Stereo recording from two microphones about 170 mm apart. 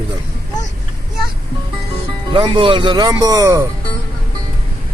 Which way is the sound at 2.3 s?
30° right (ahead or behind).